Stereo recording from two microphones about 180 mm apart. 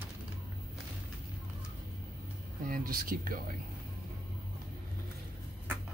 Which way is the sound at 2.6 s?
50° right (ahead or behind).